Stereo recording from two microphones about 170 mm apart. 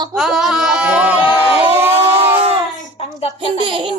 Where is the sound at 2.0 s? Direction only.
35° right (ahead or behind).